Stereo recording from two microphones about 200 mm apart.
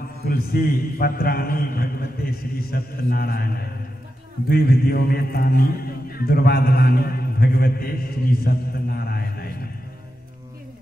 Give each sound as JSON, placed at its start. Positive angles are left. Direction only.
{"t": 0.2, "sound": "a man's voice", "side_deg": 50}